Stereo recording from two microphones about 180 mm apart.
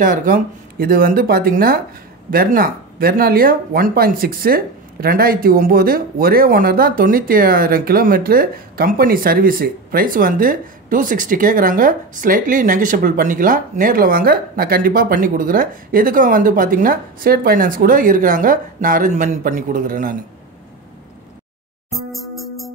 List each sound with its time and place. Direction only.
0.0 s speech: 45° right (ahead or behind)
22.1 s music: centre (ahead or behind)